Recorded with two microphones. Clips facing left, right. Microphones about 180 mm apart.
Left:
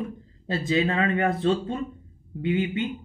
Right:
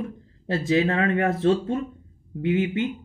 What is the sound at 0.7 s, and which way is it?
Speech, 65° right (ahead or behind).